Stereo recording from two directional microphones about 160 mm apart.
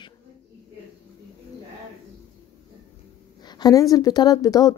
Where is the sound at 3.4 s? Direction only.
25° left (ahead or behind).